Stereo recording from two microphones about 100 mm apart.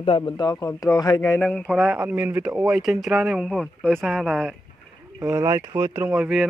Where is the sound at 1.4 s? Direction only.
15° left (ahead or behind).